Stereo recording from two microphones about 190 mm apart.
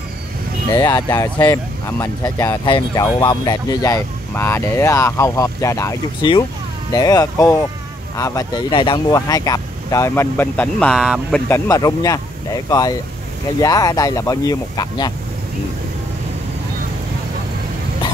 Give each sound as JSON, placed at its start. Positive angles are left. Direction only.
{"t": 0.7, "sound": "speech", "side_deg": 20}
{"t": 11.4, "sound": "speech", "side_deg": 10}